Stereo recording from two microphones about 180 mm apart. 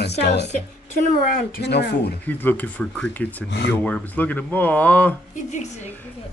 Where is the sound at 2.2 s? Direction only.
10° left (ahead or behind).